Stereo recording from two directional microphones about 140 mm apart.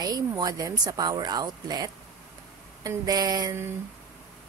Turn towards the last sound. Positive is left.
turn(degrees=-25)  # may be behind; listen again after turning